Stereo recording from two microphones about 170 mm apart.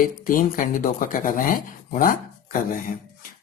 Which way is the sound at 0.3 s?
55° left (ahead or behind).